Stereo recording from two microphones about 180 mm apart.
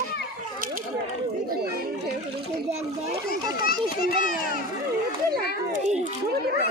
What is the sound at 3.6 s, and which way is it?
Speech, 55° left (ahead or behind).